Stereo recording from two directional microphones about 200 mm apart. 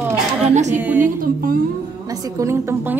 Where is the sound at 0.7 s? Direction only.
10° right (ahead or behind).